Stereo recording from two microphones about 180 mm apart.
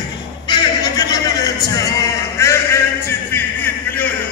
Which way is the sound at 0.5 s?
25° left (ahead or behind).